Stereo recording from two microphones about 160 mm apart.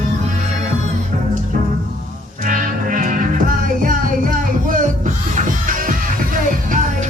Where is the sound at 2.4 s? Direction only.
55° right (ahead or behind).